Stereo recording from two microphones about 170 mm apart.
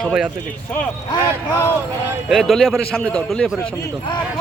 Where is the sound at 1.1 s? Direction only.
15° left (ahead or behind).